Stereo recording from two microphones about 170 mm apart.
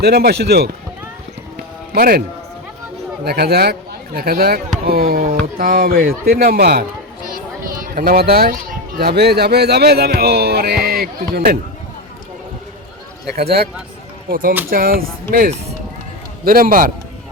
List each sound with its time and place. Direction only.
0.0 s speech: 70° right (ahead or behind)
1.9 s a man's voice: 60° right (ahead or behind)
3.2 s speech: 70° right (ahead or behind)
14.3 s speech: 55° right (ahead or behind)